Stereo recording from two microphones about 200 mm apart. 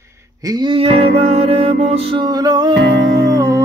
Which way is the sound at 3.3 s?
15° right (ahead or behind).